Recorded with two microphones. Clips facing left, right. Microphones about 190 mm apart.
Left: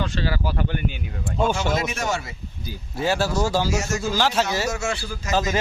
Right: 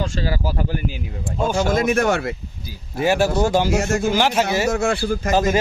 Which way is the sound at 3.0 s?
15° right (ahead or behind).